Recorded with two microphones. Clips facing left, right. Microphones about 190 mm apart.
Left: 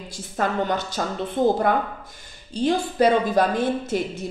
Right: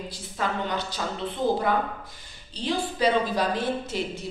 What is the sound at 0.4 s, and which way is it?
A woman's voice, 45° left (ahead or behind).